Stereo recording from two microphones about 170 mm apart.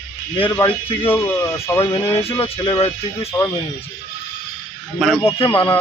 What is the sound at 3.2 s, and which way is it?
Speech, 20° left (ahead or behind).